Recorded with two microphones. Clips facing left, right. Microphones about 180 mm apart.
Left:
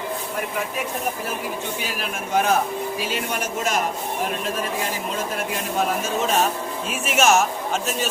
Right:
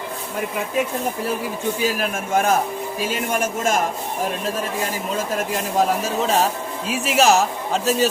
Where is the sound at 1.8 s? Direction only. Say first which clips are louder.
Right 6 dB; 45° right (ahead or behind).